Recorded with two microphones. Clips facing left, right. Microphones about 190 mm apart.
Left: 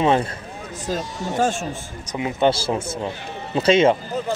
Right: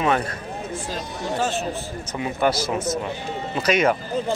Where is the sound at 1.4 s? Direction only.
50° left (ahead or behind).